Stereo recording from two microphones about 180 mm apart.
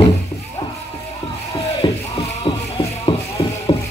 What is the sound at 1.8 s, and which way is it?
Music, 30° left (ahead or behind).